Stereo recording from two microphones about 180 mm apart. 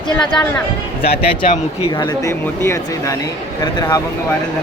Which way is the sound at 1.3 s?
30° left (ahead or behind).